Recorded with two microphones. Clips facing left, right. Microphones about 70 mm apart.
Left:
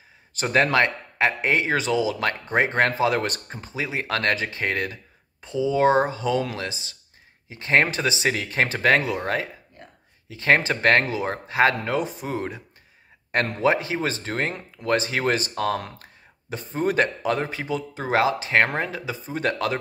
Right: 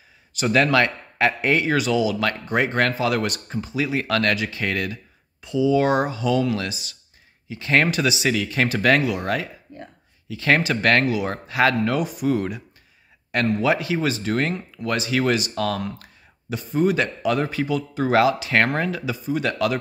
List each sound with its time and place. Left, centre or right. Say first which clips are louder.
0.3 s speech: right 2 dB; left